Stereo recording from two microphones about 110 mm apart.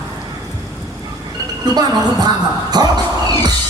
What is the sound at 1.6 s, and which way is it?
Speech, 40° right (ahead or behind).